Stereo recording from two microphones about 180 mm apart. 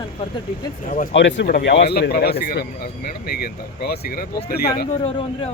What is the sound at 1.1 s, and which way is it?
Speech, 75° left (ahead or behind).